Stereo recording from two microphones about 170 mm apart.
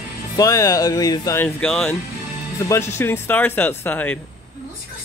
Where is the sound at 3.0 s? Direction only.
10° left (ahead or behind).